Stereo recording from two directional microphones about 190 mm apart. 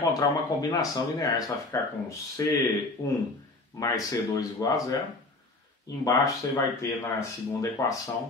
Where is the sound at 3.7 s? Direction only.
20° left (ahead or behind).